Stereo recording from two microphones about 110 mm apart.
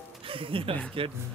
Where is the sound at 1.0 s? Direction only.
55° right (ahead or behind).